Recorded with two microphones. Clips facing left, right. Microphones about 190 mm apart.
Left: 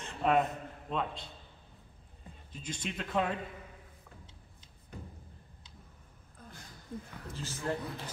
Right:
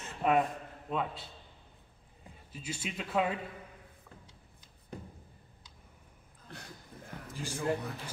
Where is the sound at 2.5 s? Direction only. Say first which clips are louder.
Even; 5° right (ahead or behind).